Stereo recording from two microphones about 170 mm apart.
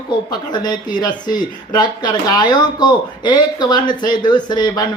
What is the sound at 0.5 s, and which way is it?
Speech, 25° left (ahead or behind).